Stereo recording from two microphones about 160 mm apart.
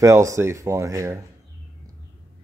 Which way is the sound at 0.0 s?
20° right (ahead or behind).